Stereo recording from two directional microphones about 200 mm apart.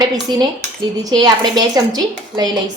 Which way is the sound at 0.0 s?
20° right (ahead or behind).